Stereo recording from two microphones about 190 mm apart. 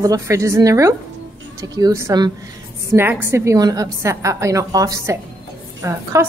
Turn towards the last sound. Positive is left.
turn(degrees=-15)  # may be behind; listen again after turning